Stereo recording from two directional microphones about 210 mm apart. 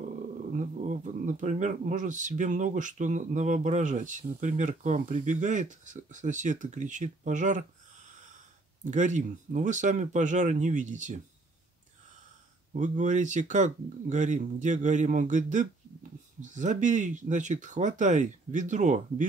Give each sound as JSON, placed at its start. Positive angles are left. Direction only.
{"t": 0.6, "sound": "speech", "side_deg": -35}
{"t": 12.7, "sound": "speech", "side_deg": -35}